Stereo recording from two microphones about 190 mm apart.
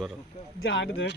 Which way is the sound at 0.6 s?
90° left.